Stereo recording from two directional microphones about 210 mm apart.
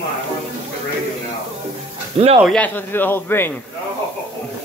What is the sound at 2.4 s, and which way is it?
Speech, 5° left (ahead or behind).